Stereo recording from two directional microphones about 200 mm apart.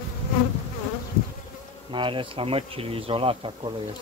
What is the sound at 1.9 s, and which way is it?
Speech, 25° right (ahead or behind).